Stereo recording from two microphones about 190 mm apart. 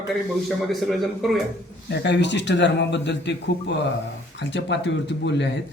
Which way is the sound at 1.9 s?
65° left (ahead or behind).